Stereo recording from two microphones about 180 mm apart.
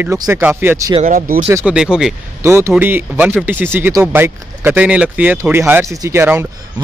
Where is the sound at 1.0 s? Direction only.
55° right (ahead or behind).